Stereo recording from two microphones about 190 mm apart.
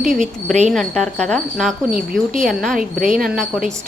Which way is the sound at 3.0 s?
45° right (ahead or behind).